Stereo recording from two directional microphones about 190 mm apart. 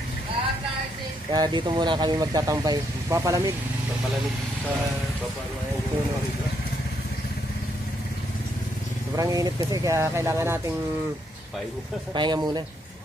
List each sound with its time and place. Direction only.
1.3 s speech: 20° right (ahead or behind)
9.1 s speech: 20° right (ahead or behind)
12.1 s speech: 25° right (ahead or behind)